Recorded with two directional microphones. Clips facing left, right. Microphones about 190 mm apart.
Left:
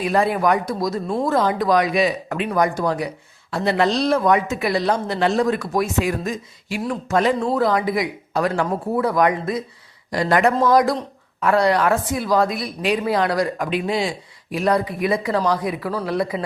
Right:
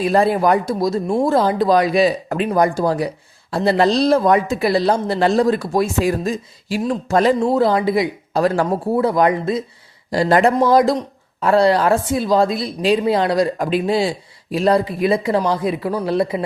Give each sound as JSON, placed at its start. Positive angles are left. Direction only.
{"t": 0.0, "sound": "speech", "side_deg": -35}